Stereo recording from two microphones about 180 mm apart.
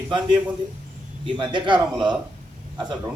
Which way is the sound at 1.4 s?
25° right (ahead or behind).